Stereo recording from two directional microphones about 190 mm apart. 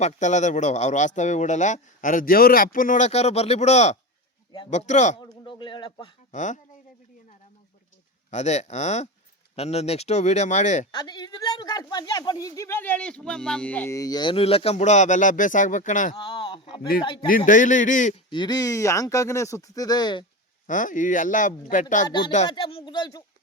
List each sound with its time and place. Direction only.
0.0 s speech: 40° left (ahead or behind)
5.2 s speech: 25° left (ahead or behind)
6.3 s speech: 40° left (ahead or behind)
8.3 s speech: 35° left (ahead or behind)
10.9 s speech: 20° left (ahead or behind); by 16.1 s 40° left (ahead or behind)
16.1 s speech: 25° left (ahead or behind)
17.2 s speech: 45° left (ahead or behind)
18.3 s speech: 25° left (ahead or behind)
20.7 s speech: 45° left (ahead or behind)
22.0 s speech: 25° left (ahead or behind)